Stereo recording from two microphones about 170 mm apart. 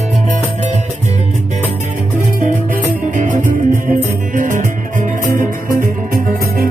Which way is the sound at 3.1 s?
50° right (ahead or behind).